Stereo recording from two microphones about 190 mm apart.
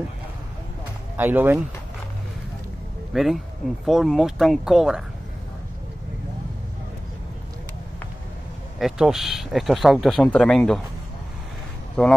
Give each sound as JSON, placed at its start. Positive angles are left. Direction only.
{"t": 1.1, "sound": "speech", "side_deg": -10}
{"t": 3.1, "sound": "speech", "side_deg": 0}
{"t": 8.7, "sound": "speech", "side_deg": 0}
{"t": 12.0, "sound": "speech", "side_deg": 5}